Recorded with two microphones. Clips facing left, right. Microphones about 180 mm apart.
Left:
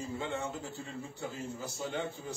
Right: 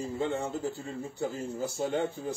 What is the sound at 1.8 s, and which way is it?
Speech, 50° right (ahead or behind).